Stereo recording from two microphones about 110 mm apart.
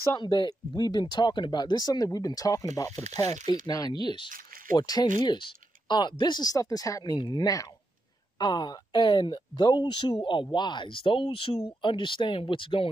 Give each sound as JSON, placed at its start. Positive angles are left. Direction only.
{"t": 0.1, "sound": "speech", "side_deg": 45}
{"t": 7.2, "sound": "speech", "side_deg": 40}
{"t": 11.8, "sound": "speech", "side_deg": 50}